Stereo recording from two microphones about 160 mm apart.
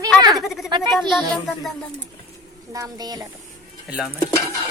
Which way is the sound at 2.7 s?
25° right (ahead or behind).